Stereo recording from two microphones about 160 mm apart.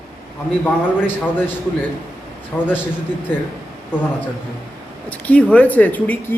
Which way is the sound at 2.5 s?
5° left (ahead or behind).